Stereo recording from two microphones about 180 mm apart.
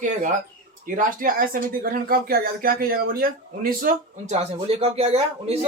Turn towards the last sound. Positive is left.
turn(degrees=-35)  # may be behind; listen again after turning